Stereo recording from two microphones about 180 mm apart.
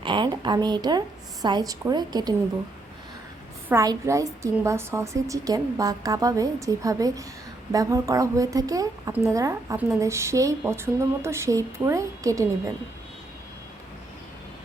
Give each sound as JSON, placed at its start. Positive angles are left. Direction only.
{"t": 0.0, "sound": "a woman's voice", "side_deg": -25}
{"t": 3.7, "sound": "a woman's voice", "side_deg": -15}